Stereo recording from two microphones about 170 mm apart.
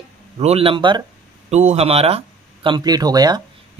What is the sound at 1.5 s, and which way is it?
Speech, 40° right (ahead or behind).